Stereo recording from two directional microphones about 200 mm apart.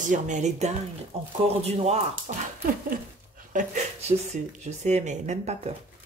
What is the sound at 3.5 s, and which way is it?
A woman's voice, 35° right (ahead or behind).